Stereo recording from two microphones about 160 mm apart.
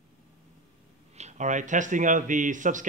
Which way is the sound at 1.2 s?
50° right (ahead or behind).